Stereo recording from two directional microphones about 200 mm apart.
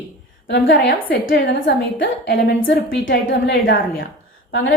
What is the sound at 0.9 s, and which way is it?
Speech, 45° left (ahead or behind).